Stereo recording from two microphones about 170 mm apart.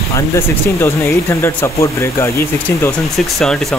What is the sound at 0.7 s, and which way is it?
Speech, 15° left (ahead or behind).